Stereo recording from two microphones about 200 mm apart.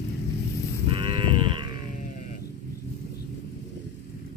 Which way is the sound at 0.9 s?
25° right (ahead or behind).